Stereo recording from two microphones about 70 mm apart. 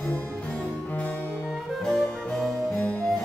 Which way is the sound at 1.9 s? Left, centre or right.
Centre.